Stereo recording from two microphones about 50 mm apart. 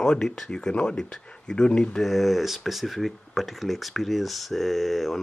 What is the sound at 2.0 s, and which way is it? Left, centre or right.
Speech, centre.